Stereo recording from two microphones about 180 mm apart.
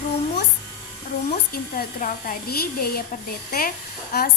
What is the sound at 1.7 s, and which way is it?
Speech, 50° left (ahead or behind).